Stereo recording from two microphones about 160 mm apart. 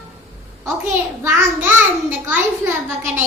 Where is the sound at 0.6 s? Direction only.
15° right (ahead or behind).